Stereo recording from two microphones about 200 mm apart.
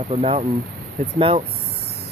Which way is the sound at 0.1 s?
30° right (ahead or behind).